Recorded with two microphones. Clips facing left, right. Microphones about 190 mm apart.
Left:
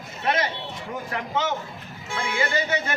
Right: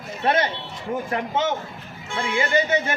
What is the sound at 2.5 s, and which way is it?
Speech, 20° right (ahead or behind).